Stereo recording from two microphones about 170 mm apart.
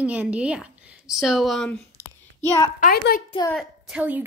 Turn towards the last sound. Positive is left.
turn(degrees=-5)  # may be behind; listen again after turning